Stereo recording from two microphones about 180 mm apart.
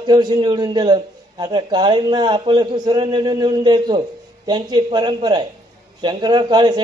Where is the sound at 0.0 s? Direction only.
25° right (ahead or behind).